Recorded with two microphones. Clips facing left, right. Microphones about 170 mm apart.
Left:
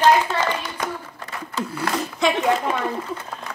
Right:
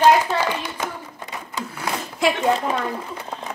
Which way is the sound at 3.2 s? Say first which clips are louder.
Right 2 dB; 20° right (ahead or behind).